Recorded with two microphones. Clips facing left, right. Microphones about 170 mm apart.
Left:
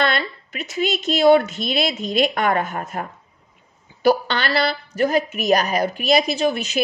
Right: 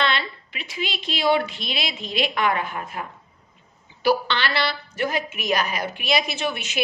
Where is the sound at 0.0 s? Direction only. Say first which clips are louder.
Left 3 dB; 45° left (ahead or behind).